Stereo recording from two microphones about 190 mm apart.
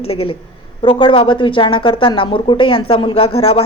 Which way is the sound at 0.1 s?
30° left (ahead or behind).